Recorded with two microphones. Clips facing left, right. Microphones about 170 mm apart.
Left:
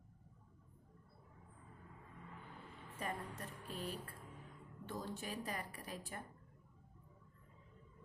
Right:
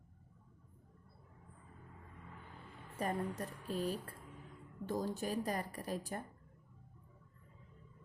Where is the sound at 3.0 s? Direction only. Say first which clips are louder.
Right 7 dB; 40° right (ahead or behind).